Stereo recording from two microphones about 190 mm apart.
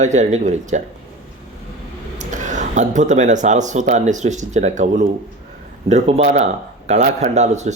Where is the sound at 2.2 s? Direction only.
40° right (ahead or behind).